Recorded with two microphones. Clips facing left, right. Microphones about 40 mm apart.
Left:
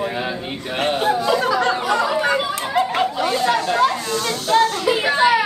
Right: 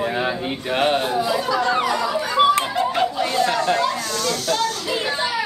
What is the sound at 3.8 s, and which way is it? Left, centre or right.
Speech, left.